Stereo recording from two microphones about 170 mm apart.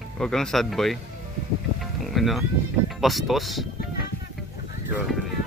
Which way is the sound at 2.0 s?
Centre (ahead or behind).